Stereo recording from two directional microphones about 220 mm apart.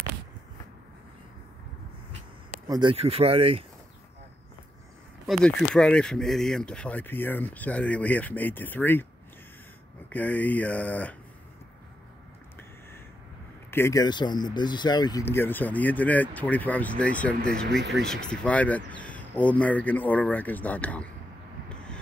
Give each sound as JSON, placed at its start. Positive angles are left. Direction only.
{"t": 2.7, "sound": "speech", "side_deg": -20}
{"t": 5.2, "sound": "speech", "side_deg": 0}
{"t": 10.0, "sound": "speech", "side_deg": 5}
{"t": 13.7, "sound": "speech", "side_deg": 10}
{"t": 17.6, "sound": "speech", "side_deg": -50}
{"t": 17.9, "sound": "speech", "side_deg": 0}